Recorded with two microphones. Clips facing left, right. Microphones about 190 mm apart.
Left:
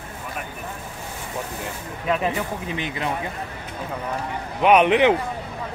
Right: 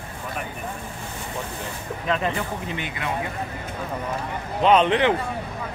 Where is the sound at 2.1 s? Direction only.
10° left (ahead or behind).